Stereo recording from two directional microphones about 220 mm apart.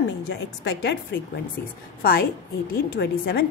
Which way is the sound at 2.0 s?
45° left (ahead or behind).